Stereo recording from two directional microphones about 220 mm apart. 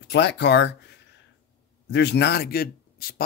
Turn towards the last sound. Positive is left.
turn(degrees=45)  # may be behind; listen again after turning